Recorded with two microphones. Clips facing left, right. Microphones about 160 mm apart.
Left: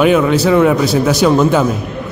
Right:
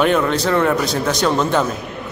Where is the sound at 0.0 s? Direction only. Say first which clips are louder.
Left 5 dB; 5° left (ahead or behind).